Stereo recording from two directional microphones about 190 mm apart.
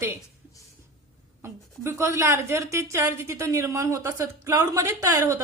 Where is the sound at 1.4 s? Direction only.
15° right (ahead or behind).